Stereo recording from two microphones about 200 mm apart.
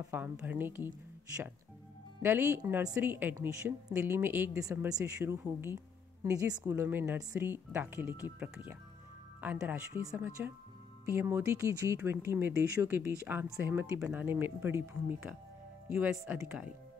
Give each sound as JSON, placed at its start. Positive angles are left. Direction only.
{"t": 0.1, "sound": "a woman's voice", "side_deg": -10}